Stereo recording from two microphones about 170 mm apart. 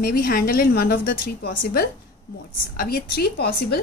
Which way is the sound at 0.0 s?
60° left (ahead or behind).